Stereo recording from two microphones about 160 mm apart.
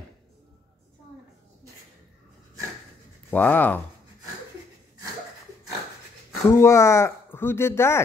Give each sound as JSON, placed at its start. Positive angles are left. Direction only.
{"t": 3.3, "sound": "speech", "side_deg": 10}
{"t": 6.5, "sound": "speech", "side_deg": 15}